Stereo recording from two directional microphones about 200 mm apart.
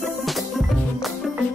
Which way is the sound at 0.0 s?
Centre (ahead or behind).